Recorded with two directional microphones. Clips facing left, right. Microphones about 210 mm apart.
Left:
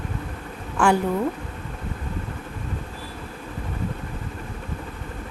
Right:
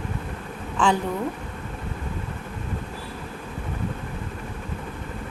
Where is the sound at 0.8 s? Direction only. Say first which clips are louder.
Left 2 dB; 10° left (ahead or behind).